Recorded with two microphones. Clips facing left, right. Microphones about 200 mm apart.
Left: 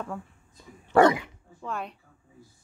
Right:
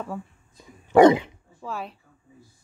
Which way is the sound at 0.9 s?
20° right (ahead or behind).